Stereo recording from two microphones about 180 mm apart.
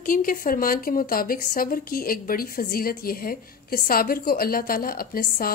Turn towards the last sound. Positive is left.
turn(degrees=55)  # may be behind; listen again after turning